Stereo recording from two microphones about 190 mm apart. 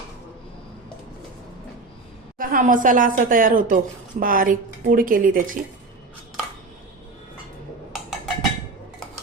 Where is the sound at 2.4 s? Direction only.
45° right (ahead or behind).